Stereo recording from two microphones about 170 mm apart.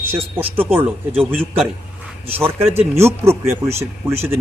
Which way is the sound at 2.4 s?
15° right (ahead or behind).